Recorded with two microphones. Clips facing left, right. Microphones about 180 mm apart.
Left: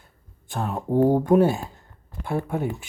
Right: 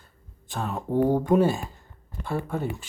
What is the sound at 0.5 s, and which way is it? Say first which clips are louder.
Speech: left 3 dB; 15° left (ahead or behind).